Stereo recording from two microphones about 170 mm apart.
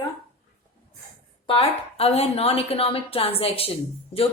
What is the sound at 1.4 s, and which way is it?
A woman's voice, 35° left (ahead or behind).